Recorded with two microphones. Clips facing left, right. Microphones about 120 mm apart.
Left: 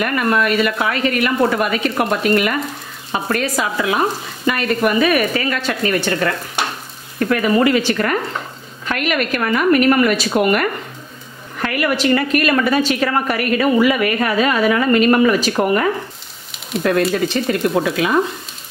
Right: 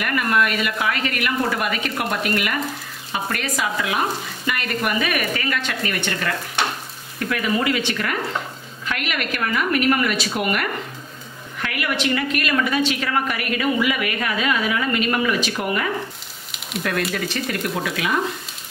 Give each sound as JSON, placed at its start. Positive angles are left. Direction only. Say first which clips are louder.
{"t": 0.0, "sound": "speech", "louder": "left 4 dB", "side_deg": 30}
{"t": 7.2, "sound": "a woman's voice", "louder": "left 7 dB", "side_deg": 40}
{"t": 17.1, "sound": "speech", "louder": "left 7 dB", "side_deg": 30}